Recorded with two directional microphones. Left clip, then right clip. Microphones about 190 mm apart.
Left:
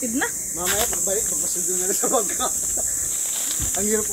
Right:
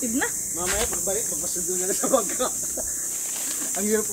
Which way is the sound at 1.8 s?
Centre (ahead or behind).